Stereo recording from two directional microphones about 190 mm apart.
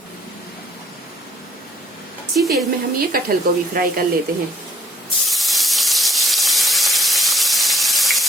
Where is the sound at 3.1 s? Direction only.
50° right (ahead or behind).